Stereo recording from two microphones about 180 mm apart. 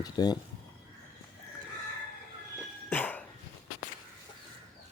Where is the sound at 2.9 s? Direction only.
10° left (ahead or behind).